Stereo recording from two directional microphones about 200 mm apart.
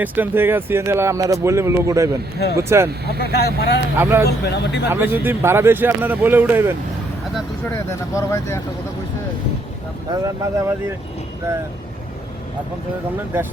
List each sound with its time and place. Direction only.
0.0 s speech: 10° right (ahead or behind)
3.2 s speech: 50° left (ahead or behind)
3.9 s speech: 10° right (ahead or behind)
4.3 s speech: 55° left (ahead or behind)
4.9 s speech: 10° right (ahead or behind)
7.9 s speech: 15° left (ahead or behind)
10.1 s speech: 15° right (ahead or behind)